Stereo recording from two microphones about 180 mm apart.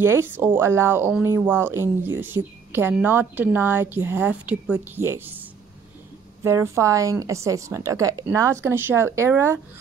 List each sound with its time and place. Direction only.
0.0 s a woman's voice: 15° right (ahead or behind)
6.4 s a woman's voice: 15° right (ahead or behind)